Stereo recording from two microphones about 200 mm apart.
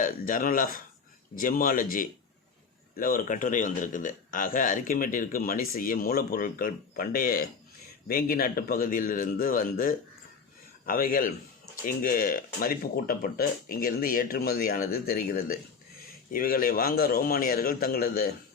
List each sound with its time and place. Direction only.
0.0 s a man's voice: 40° left (ahead or behind)